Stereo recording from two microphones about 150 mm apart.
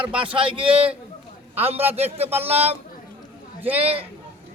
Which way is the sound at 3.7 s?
40° right (ahead or behind).